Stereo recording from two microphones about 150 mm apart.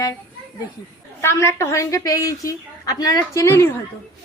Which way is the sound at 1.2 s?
15° left (ahead or behind).